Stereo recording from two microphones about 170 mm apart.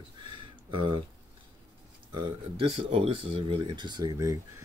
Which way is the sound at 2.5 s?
35° right (ahead or behind).